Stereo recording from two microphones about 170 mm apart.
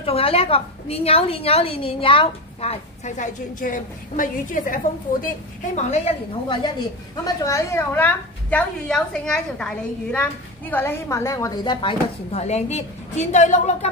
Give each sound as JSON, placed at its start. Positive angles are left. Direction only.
{"t": 0.0, "sound": "a woman's voice", "side_deg": 35}
{"t": 7.2, "sound": "a woman's voice", "side_deg": 20}
{"t": 12.3, "sound": "a woman's voice", "side_deg": 40}